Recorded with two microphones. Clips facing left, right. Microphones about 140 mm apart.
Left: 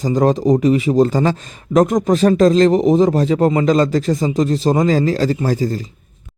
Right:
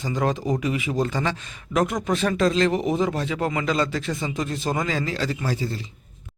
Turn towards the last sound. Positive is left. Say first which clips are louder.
# left 9 dB
turn(degrees=40)  # may be behind; listen again after turning